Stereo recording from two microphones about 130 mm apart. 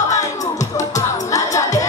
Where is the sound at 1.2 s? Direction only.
25° left (ahead or behind).